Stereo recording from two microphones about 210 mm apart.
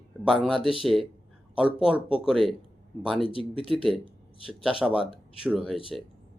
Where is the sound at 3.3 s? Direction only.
25° left (ahead or behind).